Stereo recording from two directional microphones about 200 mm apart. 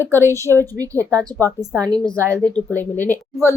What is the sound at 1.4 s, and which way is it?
A woman's voice, 10° left (ahead or behind).